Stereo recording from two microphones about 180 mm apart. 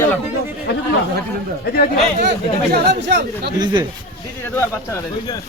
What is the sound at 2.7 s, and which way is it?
Speech, 70° right (ahead or behind).